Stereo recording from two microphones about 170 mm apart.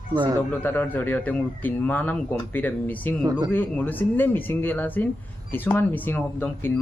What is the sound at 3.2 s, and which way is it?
Speech, 20° right (ahead or behind).